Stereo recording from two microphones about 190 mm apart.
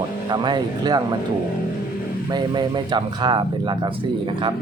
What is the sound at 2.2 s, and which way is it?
Speech, 20° right (ahead or behind).